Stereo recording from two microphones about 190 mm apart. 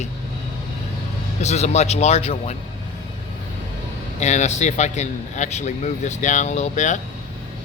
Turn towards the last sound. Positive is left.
turn(degrees=40)  # may be behind; listen again after turning